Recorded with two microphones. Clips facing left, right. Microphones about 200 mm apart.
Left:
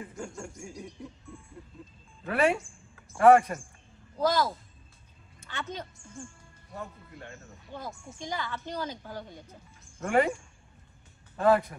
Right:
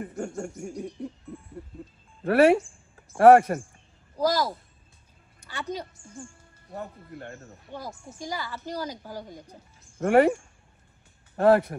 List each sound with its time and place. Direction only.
0.0 s speech: 55° right (ahead or behind)
0.6 s music: 55° right (ahead or behind)
2.2 s speech: 65° right (ahead or behind)
4.2 s a woman's voice: 10° right (ahead or behind)
7.1 s speech: 55° right (ahead or behind)
8.3 s a woman's voice: 10° right (ahead or behind)
9.9 s speech: 65° right (ahead or behind)